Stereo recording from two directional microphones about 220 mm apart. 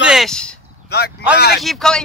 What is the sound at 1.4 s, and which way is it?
Speech, 45° left (ahead or behind).